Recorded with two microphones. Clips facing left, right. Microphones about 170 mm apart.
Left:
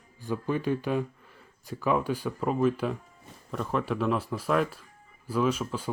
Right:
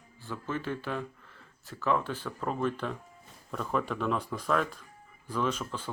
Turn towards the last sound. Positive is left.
turn(degrees=10)  # may be behind; listen again after turning